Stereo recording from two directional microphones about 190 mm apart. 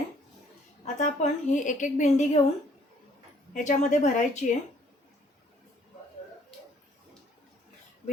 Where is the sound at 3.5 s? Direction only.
40° left (ahead or behind).